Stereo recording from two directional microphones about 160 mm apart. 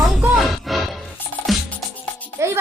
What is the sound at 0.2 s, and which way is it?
Music, centre (ahead or behind).